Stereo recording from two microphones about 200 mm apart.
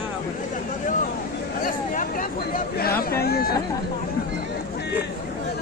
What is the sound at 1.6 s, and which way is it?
Speech, 40° left (ahead or behind).